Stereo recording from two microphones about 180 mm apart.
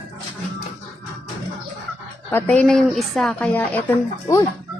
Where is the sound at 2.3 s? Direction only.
10° left (ahead or behind).